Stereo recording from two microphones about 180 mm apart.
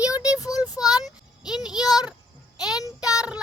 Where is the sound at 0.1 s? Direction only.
20° left (ahead or behind).